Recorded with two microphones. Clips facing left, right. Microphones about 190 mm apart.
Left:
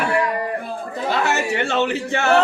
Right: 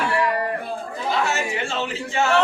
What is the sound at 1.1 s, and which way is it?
Speech, 70° left (ahead or behind).